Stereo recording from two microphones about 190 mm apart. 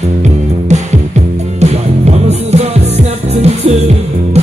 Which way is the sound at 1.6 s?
35° right (ahead or behind).